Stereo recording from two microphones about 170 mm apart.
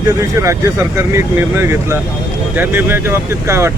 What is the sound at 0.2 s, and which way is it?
Speech, 15° right (ahead or behind).